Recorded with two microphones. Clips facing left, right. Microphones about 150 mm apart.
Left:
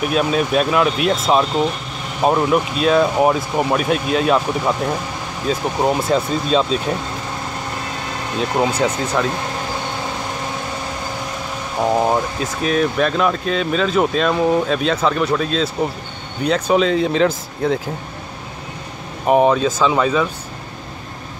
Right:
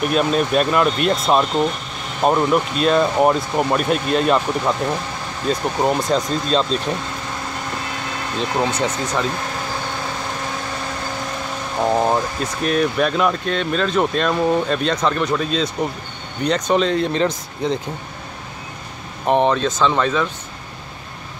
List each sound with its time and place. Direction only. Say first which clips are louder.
0.0 s speech: even; centre (ahead or behind)
8.4 s speech: left 3 dB; 10° left (ahead or behind)
11.8 s speech: left 1 dB; 5° left (ahead or behind)
19.2 s speech: left 3 dB; 5° left (ahead or behind)